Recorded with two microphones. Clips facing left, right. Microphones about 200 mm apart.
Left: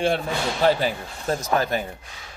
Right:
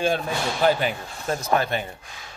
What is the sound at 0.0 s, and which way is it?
Speech, 30° left (ahead or behind).